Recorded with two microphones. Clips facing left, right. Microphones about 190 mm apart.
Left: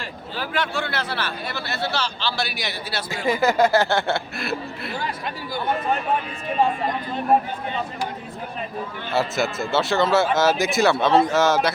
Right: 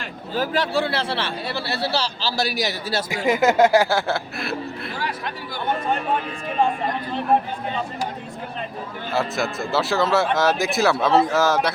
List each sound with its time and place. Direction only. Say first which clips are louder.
0.3 s a man's voice: right 5 dB; 35° right (ahead or behind)
3.1 s speech: right 2 dB; 20° right (ahead or behind); by 4.5 s centre (ahead or behind)
9.1 s speech: left 1 dB; centre (ahead or behind)